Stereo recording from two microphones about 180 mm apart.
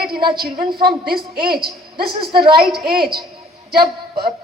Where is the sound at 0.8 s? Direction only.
60° right (ahead or behind).